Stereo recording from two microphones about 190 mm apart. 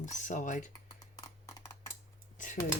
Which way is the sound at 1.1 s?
15° left (ahead or behind).